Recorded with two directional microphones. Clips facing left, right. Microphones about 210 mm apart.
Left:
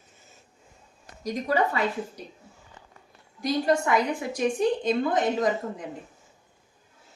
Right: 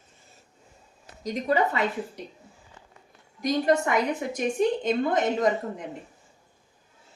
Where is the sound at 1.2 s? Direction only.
20° right (ahead or behind).